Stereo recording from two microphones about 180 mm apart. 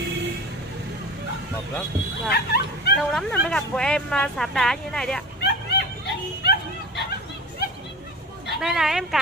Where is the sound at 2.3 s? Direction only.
65° left (ahead or behind).